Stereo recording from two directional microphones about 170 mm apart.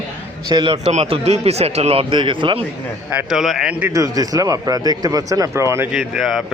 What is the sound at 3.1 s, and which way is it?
Speech, 5° right (ahead or behind).